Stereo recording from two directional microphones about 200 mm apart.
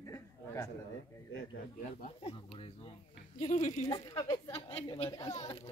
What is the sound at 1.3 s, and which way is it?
Speech, 45° left (ahead or behind).